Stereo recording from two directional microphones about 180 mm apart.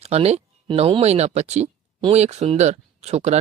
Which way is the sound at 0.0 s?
35° right (ahead or behind).